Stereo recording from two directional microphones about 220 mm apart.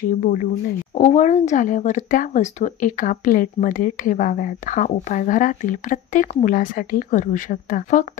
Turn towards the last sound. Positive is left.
turn(degrees=40)  # may be behind; listen again after turning